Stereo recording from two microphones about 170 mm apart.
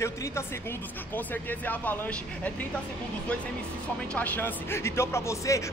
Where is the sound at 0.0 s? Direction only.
15° left (ahead or behind).